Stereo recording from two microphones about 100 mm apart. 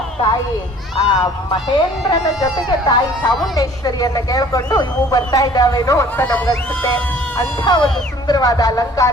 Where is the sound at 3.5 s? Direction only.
40° left (ahead or behind).